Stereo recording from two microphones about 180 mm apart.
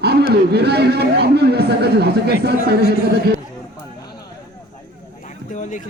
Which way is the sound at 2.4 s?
60° right (ahead or behind).